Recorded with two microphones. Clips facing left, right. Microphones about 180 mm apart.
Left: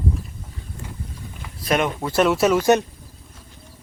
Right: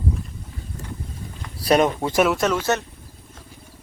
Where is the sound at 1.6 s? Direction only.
35° right (ahead or behind).